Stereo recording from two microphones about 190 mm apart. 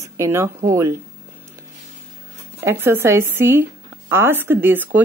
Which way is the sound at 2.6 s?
10° right (ahead or behind).